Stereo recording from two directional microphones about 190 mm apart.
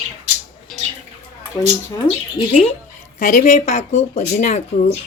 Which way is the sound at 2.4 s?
25° left (ahead or behind).